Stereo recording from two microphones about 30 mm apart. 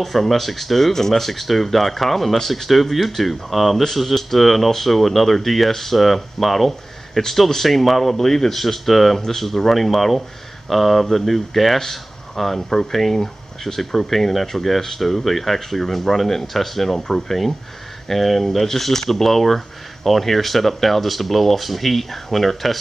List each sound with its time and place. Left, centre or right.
0.0 s speech: centre
8.2 s speech: centre
8.5 s speech: centre